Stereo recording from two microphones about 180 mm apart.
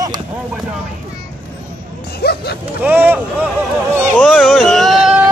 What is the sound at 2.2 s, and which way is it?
Speech, 60° left (ahead or behind).